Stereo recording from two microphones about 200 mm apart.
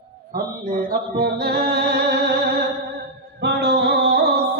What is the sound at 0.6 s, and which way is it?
Music, 45° right (ahead or behind).